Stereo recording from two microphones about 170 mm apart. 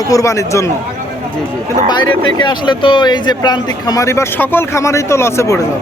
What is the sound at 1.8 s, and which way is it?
Speech, 25° left (ahead or behind).